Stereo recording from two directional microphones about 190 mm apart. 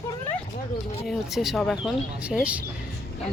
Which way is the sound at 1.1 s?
Centre (ahead or behind).